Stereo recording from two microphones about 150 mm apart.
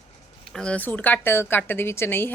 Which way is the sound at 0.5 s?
10° left (ahead or behind).